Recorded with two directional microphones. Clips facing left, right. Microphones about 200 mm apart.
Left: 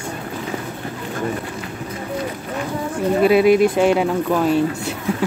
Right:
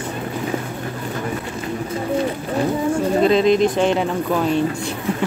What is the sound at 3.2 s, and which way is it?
Speech, 10° left (ahead or behind).